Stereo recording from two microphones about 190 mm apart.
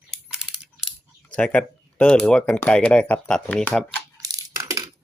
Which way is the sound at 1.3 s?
5° left (ahead or behind).